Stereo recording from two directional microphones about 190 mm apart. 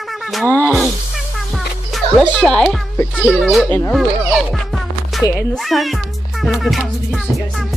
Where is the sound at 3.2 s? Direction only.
Centre (ahead or behind).